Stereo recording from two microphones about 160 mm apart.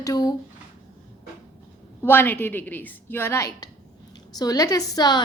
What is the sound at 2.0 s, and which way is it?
A woman's voice, 15° left (ahead or behind).